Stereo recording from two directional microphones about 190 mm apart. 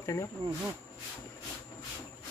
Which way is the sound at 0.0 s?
15° left (ahead or behind).